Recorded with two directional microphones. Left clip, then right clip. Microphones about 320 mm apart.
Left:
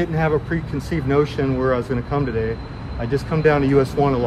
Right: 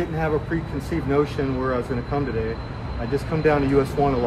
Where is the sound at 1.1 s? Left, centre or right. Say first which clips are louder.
Left 3 dB; left.